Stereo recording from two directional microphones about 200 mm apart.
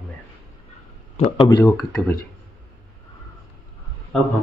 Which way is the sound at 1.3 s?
25° left (ahead or behind).